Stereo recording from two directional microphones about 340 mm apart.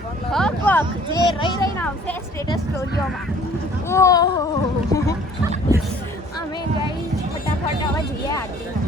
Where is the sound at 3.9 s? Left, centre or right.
Centre.